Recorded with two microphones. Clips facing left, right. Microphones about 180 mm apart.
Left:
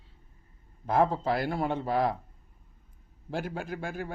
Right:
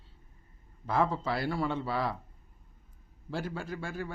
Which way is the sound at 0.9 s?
45° left (ahead or behind).